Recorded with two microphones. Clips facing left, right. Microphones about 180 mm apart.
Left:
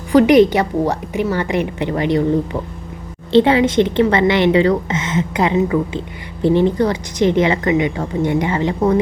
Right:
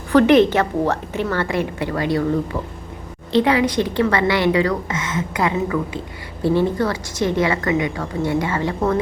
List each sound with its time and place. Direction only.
0.1 s a woman's voice: 15° left (ahead or behind)